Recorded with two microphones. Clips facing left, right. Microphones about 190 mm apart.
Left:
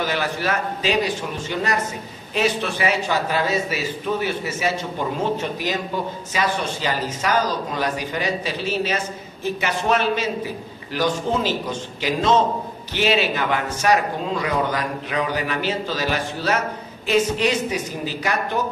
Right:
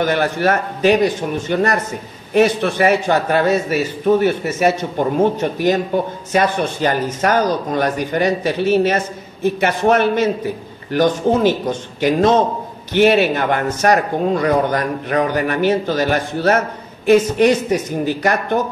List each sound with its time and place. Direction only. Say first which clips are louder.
0.0 s a man's voice: right 7 dB; 55° right (ahead or behind)